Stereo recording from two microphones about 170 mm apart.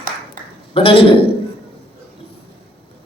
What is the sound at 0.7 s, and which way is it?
Speech, 30° left (ahead or behind).